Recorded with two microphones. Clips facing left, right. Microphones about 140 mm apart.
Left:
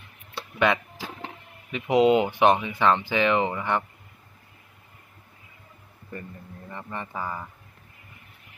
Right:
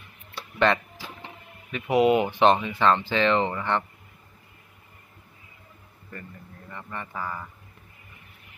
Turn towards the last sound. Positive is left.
turn(degrees=15)  # may be behind; listen again after turning